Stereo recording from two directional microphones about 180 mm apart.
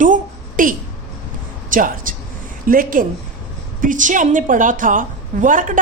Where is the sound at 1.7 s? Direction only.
50° right (ahead or behind).